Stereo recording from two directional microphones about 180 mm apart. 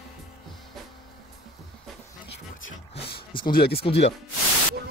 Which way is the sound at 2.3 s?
75° left (ahead or behind).